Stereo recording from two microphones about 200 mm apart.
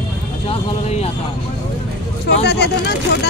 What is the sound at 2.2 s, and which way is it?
Speech, 55° left (ahead or behind).